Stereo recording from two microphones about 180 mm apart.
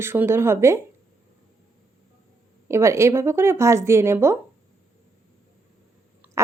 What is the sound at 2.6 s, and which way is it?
Speech, 15° right (ahead or behind).